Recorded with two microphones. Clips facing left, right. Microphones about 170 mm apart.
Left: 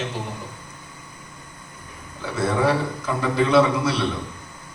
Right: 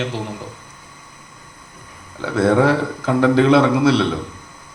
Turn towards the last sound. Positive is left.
turn(degrees=-90)